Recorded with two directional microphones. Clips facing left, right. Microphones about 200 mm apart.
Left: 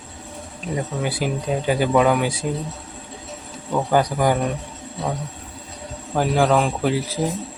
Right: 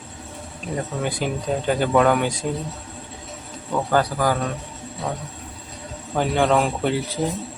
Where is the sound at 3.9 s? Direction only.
15° left (ahead or behind).